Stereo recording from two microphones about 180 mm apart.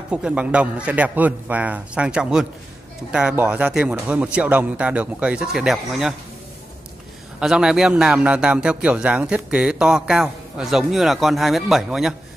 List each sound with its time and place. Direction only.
0.1 s a man's voice: 5° right (ahead or behind)
7.3 s a man's voice: 5° right (ahead or behind)